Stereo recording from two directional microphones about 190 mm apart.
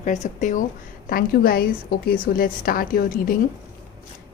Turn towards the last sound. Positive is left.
turn(degrees=50)  # may be behind; listen again after turning